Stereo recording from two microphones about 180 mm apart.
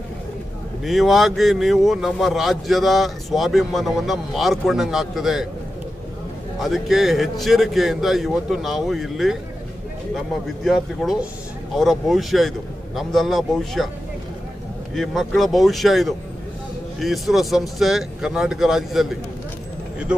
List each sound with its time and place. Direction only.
0.8 s speech: centre (ahead or behind)
6.6 s speech: centre (ahead or behind)
15.0 s speech: centre (ahead or behind)